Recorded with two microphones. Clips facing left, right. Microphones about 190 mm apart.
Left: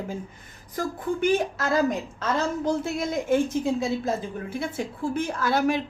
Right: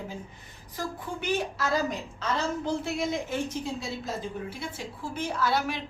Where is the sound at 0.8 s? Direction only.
50° left (ahead or behind).